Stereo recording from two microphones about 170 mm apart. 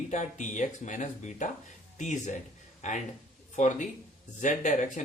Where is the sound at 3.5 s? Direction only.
45° left (ahead or behind).